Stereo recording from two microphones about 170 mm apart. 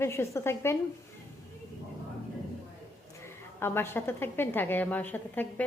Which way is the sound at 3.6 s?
15° left (ahead or behind).